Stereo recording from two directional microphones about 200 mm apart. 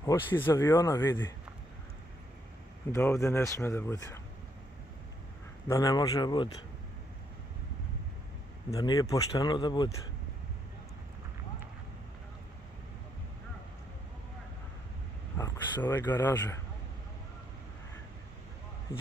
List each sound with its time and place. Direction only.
0.0 s speech: 15° left (ahead or behind)
2.9 s speech: 15° left (ahead or behind)
5.7 s speech: 20° left (ahead or behind)
8.6 s speech: 20° left (ahead or behind)
15.3 s speech: 10° left (ahead or behind)